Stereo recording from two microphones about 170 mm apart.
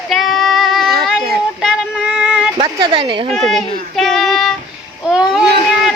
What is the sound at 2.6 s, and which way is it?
Speech, 30° right (ahead or behind).